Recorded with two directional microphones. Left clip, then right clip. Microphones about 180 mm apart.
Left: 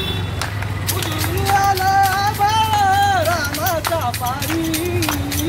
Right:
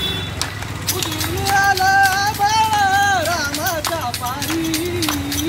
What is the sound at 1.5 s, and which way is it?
Music, 5° left (ahead or behind).